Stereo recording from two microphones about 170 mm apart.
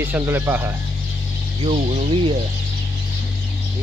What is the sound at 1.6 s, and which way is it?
Speech, 40° right (ahead or behind).